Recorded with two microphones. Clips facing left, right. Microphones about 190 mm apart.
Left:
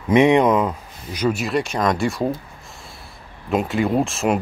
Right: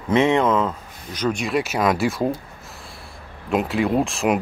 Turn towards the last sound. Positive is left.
turn(degrees=0)  # may be behind; listen again after turning